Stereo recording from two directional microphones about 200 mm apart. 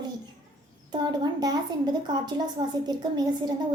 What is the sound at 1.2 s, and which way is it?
Speech, 20° right (ahead or behind).